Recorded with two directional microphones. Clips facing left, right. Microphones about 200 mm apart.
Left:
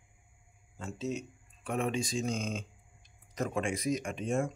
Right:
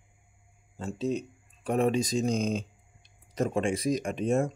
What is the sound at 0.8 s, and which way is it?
Speech, 30° right (ahead or behind).